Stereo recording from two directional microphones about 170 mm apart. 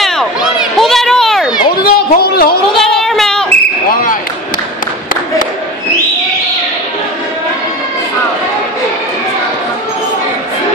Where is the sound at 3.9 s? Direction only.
55° left (ahead or behind).